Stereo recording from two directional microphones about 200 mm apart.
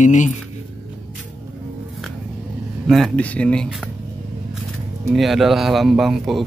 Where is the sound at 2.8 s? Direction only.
Centre (ahead or behind).